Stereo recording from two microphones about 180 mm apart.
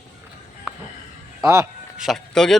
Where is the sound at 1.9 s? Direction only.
Centre (ahead or behind).